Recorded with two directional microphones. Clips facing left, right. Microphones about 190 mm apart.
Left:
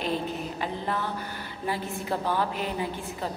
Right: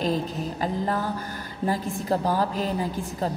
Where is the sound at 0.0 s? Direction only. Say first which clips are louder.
Right 3 dB; 40° right (ahead or behind).